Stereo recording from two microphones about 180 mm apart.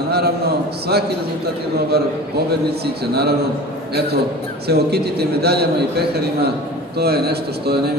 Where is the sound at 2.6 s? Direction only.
65° right (ahead or behind).